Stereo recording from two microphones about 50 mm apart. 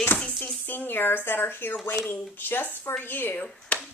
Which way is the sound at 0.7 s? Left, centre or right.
Left.